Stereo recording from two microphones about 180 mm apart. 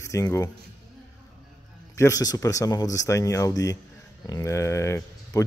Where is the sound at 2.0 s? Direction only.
20° left (ahead or behind).